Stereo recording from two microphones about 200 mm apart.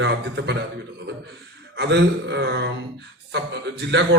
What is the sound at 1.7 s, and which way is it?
A man's voice, 60° right (ahead or behind).